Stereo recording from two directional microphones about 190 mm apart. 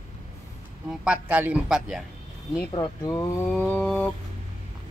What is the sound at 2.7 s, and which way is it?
Speech, 20° left (ahead or behind).